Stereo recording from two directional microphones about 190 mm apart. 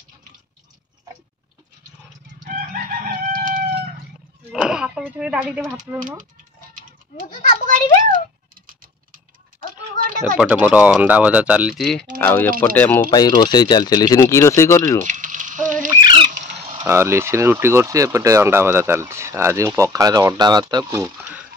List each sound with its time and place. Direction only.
2.4 s chicken: 45° right (ahead or behind)
4.5 s a sound: 5° right (ahead or behind)
7.6 s a child's voice: 40° right (ahead or behind)
10.4 s speech: 5° right (ahead or behind); by 13.0 s 10° left (ahead or behind)
13.1 s speech: 20° left (ahead or behind)
15.0 s sizzle: 40° right (ahead or behind)
16.0 s squawk: 25° right (ahead or behind)
16.3 s a sound: 40° right (ahead or behind)
16.8 s speech: 15° right (ahead or behind)